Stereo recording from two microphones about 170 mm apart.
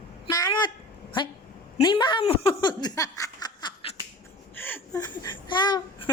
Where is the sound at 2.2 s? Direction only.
30° left (ahead or behind).